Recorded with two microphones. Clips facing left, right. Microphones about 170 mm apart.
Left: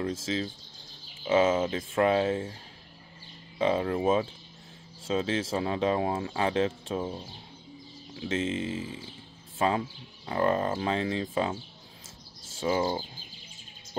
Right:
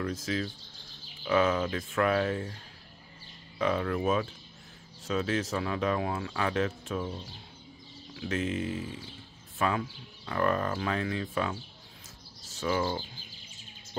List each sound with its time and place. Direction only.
0.0 s speech: 25° left (ahead or behind)
3.5 s speech: 25° left (ahead or behind)
8.2 s speech: 25° left (ahead or behind)